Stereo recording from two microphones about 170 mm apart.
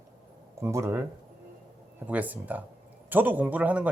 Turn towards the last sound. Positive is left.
turn(degrees=-10)  # may be behind; listen again after turning